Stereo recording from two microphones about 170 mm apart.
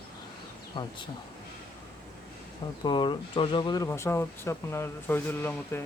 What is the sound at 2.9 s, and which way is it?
Speech, 25° left (ahead or behind).